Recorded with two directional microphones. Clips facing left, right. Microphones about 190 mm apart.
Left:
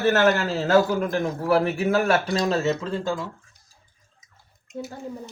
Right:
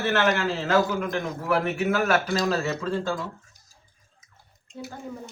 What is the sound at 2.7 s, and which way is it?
Speech, 15° left (ahead or behind).